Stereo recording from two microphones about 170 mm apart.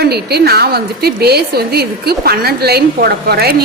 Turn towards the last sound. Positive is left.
turn(degrees=-70)  # may be behind; listen again after turning